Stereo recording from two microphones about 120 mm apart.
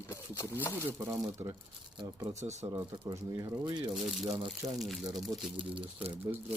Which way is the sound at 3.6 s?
40° right (ahead or behind).